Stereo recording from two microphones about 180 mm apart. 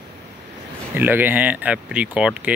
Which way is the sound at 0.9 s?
10° right (ahead or behind).